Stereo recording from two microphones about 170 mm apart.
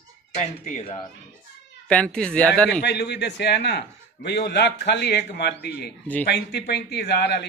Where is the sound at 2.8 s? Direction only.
75° left (ahead or behind).